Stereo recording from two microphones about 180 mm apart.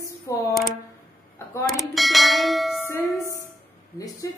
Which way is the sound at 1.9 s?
Centre (ahead or behind).